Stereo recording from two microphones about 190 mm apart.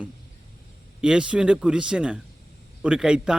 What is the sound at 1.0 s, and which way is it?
Speech, 5° right (ahead or behind).